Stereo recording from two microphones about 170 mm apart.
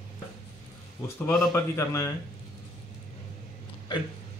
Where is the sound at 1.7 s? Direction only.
15° left (ahead or behind).